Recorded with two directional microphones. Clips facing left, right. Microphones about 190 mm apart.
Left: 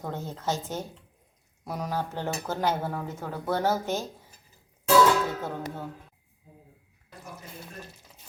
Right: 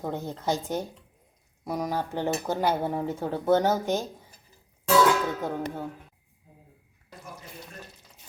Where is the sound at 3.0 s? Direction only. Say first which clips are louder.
Right 7 dB; 30° right (ahead or behind).